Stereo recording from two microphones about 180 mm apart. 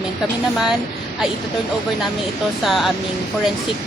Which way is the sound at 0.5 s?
Centre (ahead or behind).